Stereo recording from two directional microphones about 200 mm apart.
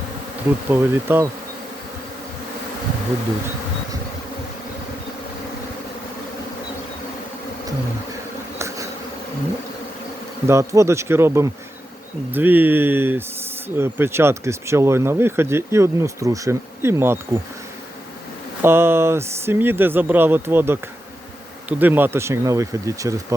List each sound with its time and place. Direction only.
0.7 s speech: 10° right (ahead or behind)
8.5 s bee: 15° right (ahead or behind)
10.4 s speech: 15° right (ahead or behind)
18.6 s speech: 10° right (ahead or behind)